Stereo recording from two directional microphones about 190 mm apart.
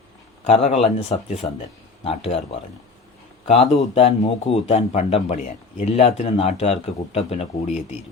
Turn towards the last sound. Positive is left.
turn(degrees=35)  # may be behind; listen again after turning